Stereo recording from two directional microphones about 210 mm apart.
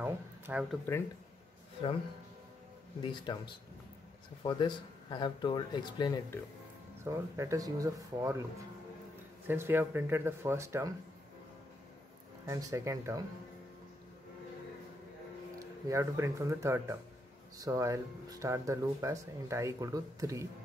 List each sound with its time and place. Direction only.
0.0 s a sound: 5° right (ahead or behind)
3.0 s speech: 20° left (ahead or behind)
7.1 s speech: 15° right (ahead or behind)
9.5 s speech: 10° right (ahead or behind)
12.4 s speech: 15° right (ahead or behind)
15.6 s speech: 15° right (ahead or behind)